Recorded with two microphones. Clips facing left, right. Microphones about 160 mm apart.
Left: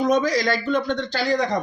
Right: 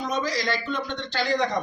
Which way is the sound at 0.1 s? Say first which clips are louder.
Left 7 dB; 50° left (ahead or behind).